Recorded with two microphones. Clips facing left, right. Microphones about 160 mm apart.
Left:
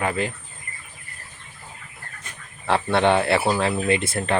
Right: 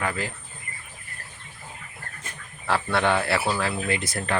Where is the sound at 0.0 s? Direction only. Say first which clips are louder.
Left 4 dB; 20° left (ahead or behind).